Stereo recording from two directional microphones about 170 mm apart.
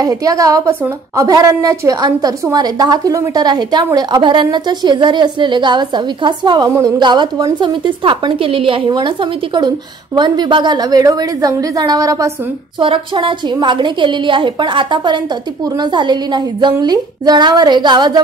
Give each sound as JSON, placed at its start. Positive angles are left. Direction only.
{"t": 0.0, "sound": "a woman's voice", "side_deg": -20}
{"t": 12.7, "sound": "a woman's voice", "side_deg": -30}